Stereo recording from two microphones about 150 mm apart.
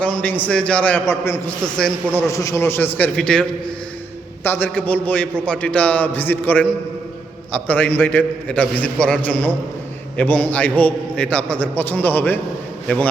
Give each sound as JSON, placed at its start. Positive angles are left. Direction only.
{"t": 0.0, "sound": "a man's voice", "side_deg": 10}
{"t": 4.4, "sound": "a man's voice", "side_deg": 15}